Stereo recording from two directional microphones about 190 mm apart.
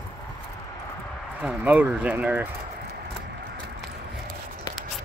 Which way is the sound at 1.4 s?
5° right (ahead or behind).